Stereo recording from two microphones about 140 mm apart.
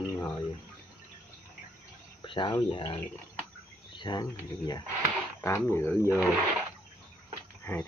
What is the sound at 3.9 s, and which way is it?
Speech, 30° left (ahead or behind).